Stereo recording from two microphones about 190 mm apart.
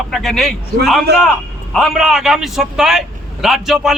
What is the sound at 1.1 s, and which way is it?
Speech, 60° right (ahead or behind).